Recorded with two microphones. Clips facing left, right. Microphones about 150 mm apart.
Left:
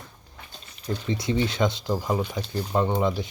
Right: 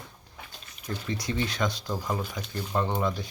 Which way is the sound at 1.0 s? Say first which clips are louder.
Left 5 dB; 25° left (ahead or behind).